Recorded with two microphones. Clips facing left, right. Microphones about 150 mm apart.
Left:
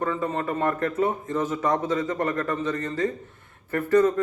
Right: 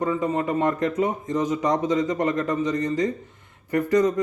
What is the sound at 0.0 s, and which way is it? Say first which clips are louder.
A man's voice: right 3 dB; 15° right (ahead or behind).